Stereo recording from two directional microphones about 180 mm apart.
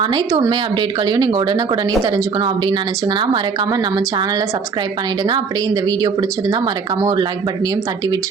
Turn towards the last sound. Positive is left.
turn(degrees=-20)  # may be behind; listen again after turning